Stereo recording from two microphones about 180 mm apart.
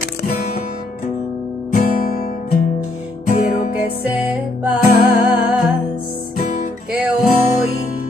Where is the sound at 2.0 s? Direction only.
55° left (ahead or behind).